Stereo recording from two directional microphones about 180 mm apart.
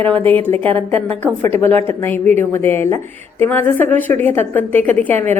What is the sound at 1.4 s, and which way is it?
Speech, 35° right (ahead or behind).